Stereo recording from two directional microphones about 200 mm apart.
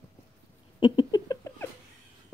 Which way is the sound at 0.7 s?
25° left (ahead or behind).